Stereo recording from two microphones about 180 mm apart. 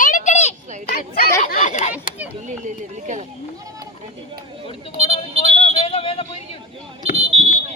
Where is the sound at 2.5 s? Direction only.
40° right (ahead or behind).